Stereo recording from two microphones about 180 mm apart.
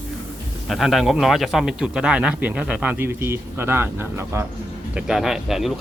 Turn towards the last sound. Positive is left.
turn(degrees=0)  # may be behind; listen again after turning